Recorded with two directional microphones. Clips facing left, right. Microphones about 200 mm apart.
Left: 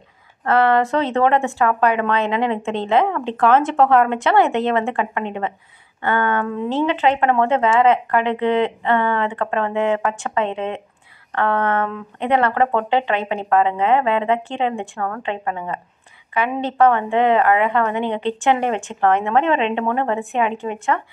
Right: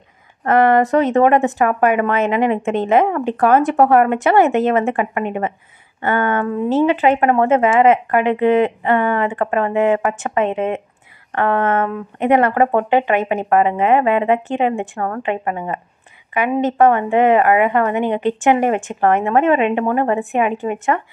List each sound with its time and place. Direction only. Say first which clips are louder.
0.4 s a woman's voice: right 3 dB; 15° right (ahead or behind)